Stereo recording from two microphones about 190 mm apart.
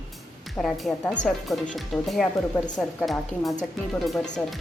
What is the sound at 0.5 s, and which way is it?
Speech, centre (ahead or behind).